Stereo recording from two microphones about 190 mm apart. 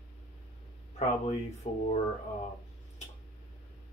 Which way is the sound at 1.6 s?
30° left (ahead or behind).